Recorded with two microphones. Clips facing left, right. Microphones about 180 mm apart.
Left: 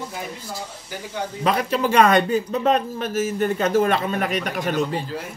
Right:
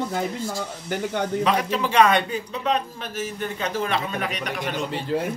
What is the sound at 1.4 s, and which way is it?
A man's voice, 45° left (ahead or behind).